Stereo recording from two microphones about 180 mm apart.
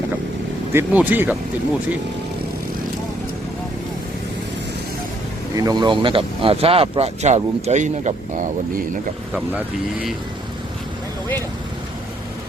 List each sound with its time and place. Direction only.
0.7 s speech: 10° right (ahead or behind)
5.5 s speech: 20° right (ahead or behind); by 8.8 s 45° right (ahead or behind)